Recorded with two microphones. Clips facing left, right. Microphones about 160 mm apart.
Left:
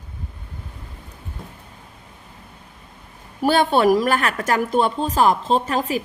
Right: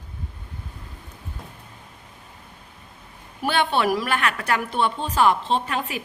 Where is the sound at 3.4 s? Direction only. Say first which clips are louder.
Left 6 dB; 40° left (ahead or behind).